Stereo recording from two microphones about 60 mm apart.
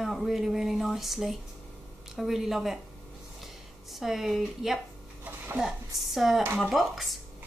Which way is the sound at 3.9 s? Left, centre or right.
Centre.